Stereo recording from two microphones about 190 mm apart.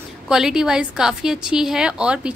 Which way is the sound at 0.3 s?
5° right (ahead or behind).